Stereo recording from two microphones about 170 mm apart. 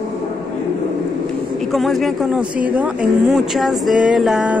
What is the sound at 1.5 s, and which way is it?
A woman's voice, centre (ahead or behind).